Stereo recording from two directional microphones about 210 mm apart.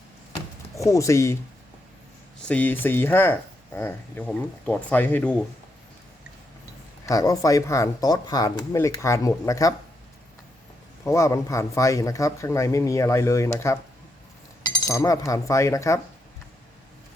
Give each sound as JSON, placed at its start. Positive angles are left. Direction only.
{"t": 0.8, "sound": "a man's voice", "side_deg": 15}
{"t": 2.4, "sound": "a man's voice", "side_deg": 5}
{"t": 7.0, "sound": "a man's voice", "side_deg": 15}
{"t": 11.0, "sound": "a man's voice", "side_deg": 15}